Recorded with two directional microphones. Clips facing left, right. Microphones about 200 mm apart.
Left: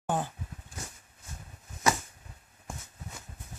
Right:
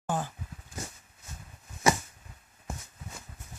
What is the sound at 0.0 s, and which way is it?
Dog, 20° left (ahead or behind).